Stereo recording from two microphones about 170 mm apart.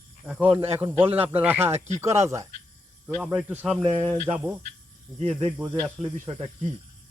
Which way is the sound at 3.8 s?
30° right (ahead or behind).